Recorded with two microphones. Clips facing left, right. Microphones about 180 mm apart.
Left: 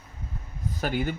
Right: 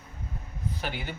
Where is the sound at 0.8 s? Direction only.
45° left (ahead or behind).